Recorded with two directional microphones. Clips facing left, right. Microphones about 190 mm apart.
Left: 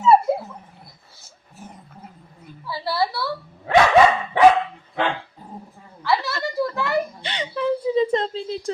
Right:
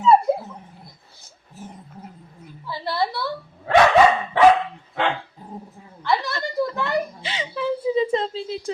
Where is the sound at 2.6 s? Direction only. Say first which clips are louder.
Left 1 dB; 5° left (ahead or behind).